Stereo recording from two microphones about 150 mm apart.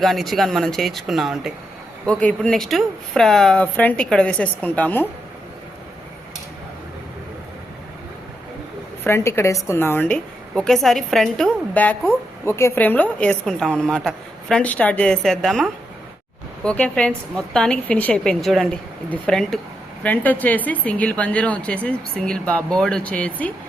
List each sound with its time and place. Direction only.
0.0 s a woman's voice: centre (ahead or behind)
9.0 s a woman's voice: 15° left (ahead or behind)